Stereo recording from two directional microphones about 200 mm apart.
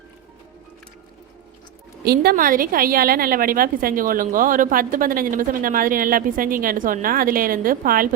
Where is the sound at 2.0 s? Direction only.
50° right (ahead or behind).